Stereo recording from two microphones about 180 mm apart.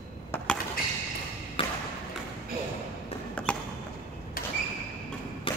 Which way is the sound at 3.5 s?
5° left (ahead or behind).